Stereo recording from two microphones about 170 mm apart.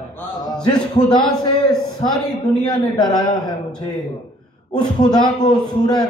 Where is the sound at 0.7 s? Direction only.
25° left (ahead or behind).